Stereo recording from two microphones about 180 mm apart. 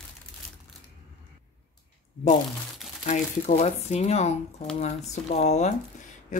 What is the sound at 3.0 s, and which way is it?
Speech, 40° left (ahead or behind).